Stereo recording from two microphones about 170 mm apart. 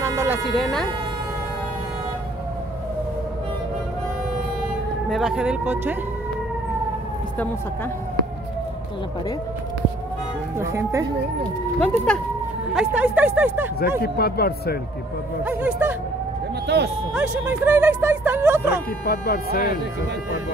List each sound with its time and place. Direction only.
0.0 s a sound: 15° right (ahead or behind)
0.6 s speech: centre (ahead or behind)
5.1 s speech: 5° right (ahead or behind)
10.6 s speech: 15° right (ahead or behind)
11.8 s speech: 10° left (ahead or behind)
12.7 s speech: 10° right (ahead or behind)
13.7 s a man's voice: 65° left (ahead or behind)
15.4 s speech: 10° right (ahead or behind)
16.6 s speech: 80° right
17.1 s speech: 10° right (ahead or behind)
19.0 s speech: 65° left (ahead or behind)